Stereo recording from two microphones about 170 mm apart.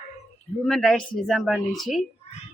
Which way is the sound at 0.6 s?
Centre (ahead or behind).